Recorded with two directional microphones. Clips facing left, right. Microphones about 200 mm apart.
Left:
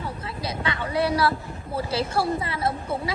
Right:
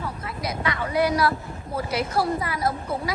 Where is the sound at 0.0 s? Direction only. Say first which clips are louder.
Right 1 dB; 30° left (ahead or behind).